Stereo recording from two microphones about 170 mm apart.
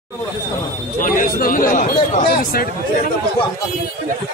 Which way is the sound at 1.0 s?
55° left (ahead or behind).